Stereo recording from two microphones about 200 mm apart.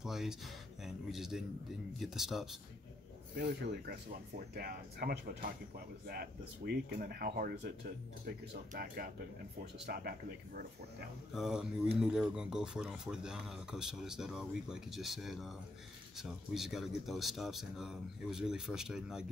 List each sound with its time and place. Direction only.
0.0 s music: centre (ahead or behind)
0.8 s speech: centre (ahead or behind)
3.3 s speech: 50° right (ahead or behind)
11.3 s speech: 5° right (ahead or behind)